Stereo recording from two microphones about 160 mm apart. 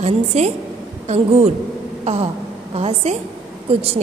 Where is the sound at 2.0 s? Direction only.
40° right (ahead or behind).